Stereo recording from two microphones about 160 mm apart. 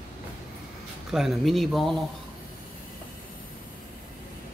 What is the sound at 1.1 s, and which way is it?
Speech, centre (ahead or behind).